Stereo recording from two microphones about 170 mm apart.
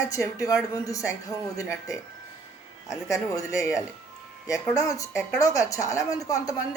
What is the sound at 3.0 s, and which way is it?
Speech, 20° left (ahead or behind).